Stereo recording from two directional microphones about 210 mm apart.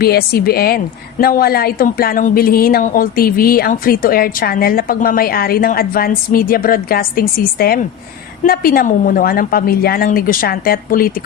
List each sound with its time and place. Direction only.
0.0 s speech: 45° left (ahead or behind)